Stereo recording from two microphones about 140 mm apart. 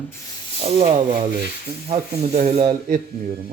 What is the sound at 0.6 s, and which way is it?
Speech, 45° right (ahead or behind).